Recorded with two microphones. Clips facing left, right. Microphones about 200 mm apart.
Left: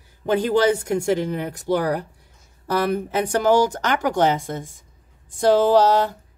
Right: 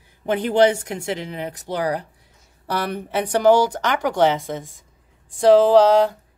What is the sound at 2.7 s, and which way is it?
Speech, 45° left (ahead or behind).